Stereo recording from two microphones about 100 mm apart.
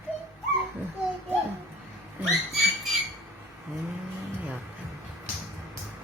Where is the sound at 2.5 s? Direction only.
Centre (ahead or behind).